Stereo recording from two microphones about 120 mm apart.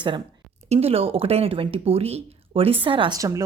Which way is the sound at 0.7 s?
60° right (ahead or behind).